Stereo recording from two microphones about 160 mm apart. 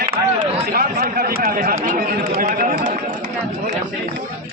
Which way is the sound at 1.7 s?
55° right (ahead or behind).